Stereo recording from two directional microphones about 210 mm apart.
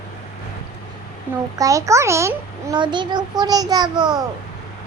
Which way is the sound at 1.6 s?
15° right (ahead or behind).